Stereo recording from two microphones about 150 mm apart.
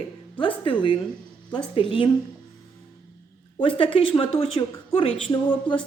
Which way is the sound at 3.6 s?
35° left (ahead or behind).